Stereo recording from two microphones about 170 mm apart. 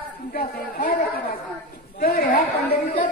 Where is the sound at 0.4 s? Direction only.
50° left (ahead or behind).